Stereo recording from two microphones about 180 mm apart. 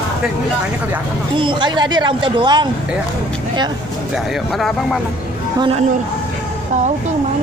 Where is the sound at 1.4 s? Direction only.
25° right (ahead or behind).